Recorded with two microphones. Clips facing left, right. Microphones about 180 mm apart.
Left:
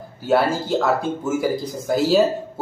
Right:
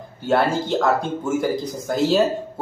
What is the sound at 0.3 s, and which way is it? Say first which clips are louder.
Speech: left 1 dB; 5° left (ahead or behind).